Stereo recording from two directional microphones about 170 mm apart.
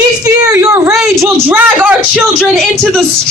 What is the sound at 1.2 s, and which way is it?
A man's voice, 10° right (ahead or behind).